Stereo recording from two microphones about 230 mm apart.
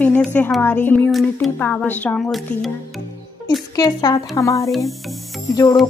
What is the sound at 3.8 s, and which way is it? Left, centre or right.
Speech, centre.